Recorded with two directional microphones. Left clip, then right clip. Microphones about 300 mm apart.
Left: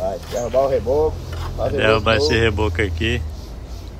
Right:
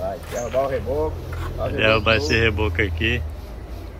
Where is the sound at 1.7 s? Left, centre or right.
Centre.